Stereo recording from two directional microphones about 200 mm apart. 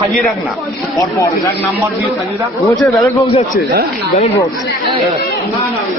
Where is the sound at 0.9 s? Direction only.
15° left (ahead or behind).